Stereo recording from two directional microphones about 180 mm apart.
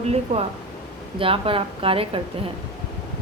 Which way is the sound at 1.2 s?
30° right (ahead or behind).